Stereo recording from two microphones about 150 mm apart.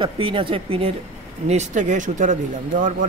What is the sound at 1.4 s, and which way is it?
Speech, 50° right (ahead or behind).